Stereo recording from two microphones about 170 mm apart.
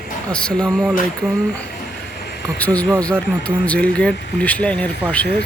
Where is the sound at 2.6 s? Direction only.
10° left (ahead or behind).